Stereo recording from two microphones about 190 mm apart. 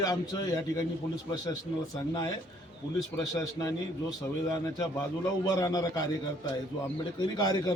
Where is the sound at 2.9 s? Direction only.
20° left (ahead or behind).